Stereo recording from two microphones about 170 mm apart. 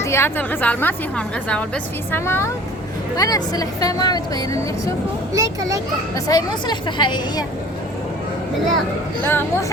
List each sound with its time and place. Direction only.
0.0 s a woman's voice: 15° left (ahead or behind)
5.3 s a child's voice: 20° right (ahead or behind)
6.1 s speech: 20° left (ahead or behind)
9.2 s a woman's voice: 15° left (ahead or behind)